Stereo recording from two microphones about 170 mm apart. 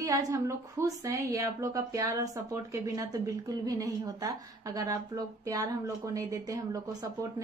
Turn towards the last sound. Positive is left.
turn(degrees=-20)  # may be behind; listen again after turning